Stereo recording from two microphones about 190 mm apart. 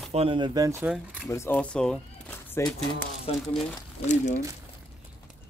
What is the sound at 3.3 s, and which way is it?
Speech, 30° left (ahead or behind).